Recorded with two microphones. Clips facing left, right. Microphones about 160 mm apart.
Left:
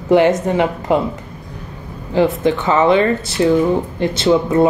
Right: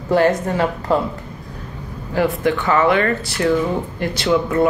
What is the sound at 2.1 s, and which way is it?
Speech, 20° left (ahead or behind).